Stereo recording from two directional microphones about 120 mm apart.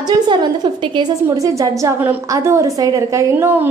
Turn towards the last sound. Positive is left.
turn(degrees=-20)  # may be behind; listen again after turning